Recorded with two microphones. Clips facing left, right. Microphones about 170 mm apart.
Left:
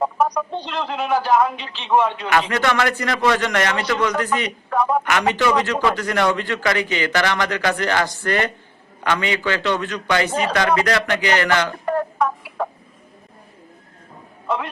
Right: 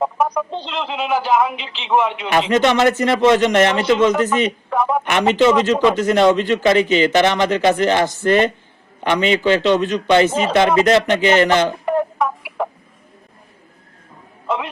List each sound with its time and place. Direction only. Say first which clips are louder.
0.0 s a sound: right 1 dB; 5° right (ahead or behind)
0.5 s speech: right 1 dB; 25° right (ahead or behind)
1.3 s speech: even; centre (ahead or behind)
2.1 s a man's voice: right 4 dB; 25° right (ahead or behind)
4.7 s speech: left 3 dB; 5° right (ahead or behind)
5.0 s a man's voice: right 5 dB; 25° right (ahead or behind)